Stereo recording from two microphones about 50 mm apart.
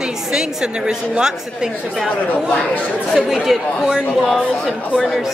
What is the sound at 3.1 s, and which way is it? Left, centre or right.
Speech, centre.